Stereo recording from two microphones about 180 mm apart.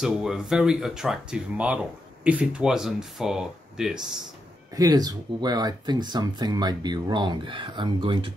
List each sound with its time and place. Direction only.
0.0 s speech: centre (ahead or behind)
4.7 s speech: 20° right (ahead or behind)